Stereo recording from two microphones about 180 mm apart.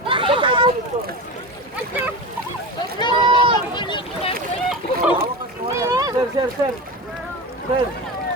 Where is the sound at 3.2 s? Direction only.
30° right (ahead or behind).